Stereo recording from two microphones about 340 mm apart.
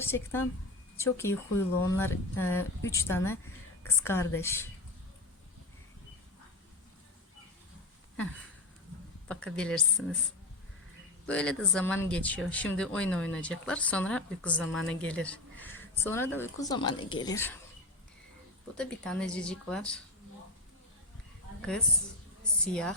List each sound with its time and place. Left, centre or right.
0.0 s speech: centre
9.3 s speech: centre
11.3 s speech: centre
18.8 s speech: centre
21.6 s a woman's voice: centre